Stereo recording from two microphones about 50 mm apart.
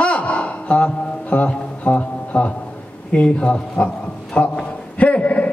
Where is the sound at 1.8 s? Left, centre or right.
Left.